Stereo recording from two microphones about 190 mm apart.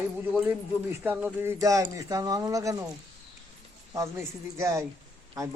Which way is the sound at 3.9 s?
15° right (ahead or behind).